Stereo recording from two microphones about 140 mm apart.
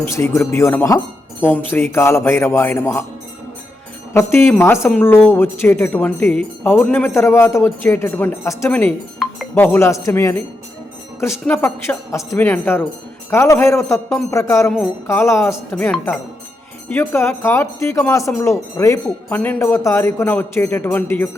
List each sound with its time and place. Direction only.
0.1 s a woman's voice: 20° left (ahead or behind)
4.1 s a woman's voice: 20° left (ahead or behind)
9.2 s a sound: 5° left (ahead or behind)
9.6 s speech: 15° left (ahead or behind)
11.4 s a woman's voice: 10° left (ahead or behind)